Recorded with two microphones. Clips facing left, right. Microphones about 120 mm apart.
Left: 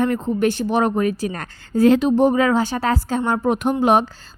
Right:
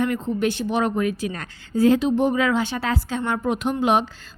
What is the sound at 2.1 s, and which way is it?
A woman's voice, 40° left (ahead or behind).